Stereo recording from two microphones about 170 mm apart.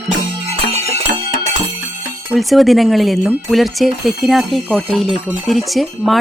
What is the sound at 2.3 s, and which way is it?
Speech, centre (ahead or behind).